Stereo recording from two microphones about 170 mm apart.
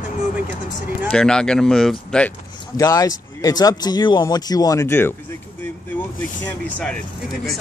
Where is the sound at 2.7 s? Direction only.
20° left (ahead or behind).